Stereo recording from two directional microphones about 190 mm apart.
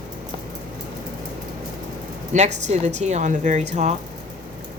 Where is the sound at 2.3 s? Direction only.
40° right (ahead or behind).